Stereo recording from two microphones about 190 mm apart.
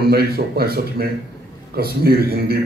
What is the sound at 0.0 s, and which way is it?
A man's voice, 55° right (ahead or behind).